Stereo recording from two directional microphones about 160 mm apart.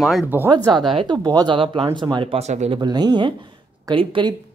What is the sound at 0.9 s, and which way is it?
Speech, 25° right (ahead or behind).